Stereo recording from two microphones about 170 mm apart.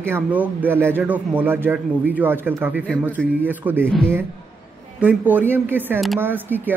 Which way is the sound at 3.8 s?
5° left (ahead or behind).